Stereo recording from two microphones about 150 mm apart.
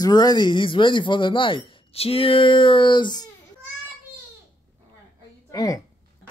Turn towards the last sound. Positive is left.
turn(degrees=25)  # may be behind; listen again after turning